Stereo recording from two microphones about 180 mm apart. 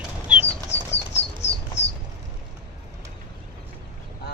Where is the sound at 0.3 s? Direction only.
5° right (ahead or behind).